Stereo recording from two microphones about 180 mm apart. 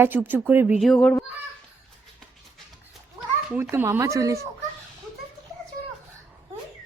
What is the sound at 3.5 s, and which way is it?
Speech, 10° right (ahead or behind).